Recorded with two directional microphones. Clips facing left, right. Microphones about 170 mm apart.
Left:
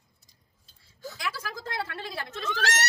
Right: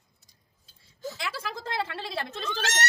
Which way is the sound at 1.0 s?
25° right (ahead or behind).